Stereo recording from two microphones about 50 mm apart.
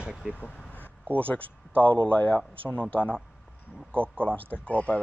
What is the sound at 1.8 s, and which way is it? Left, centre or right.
Speech, left.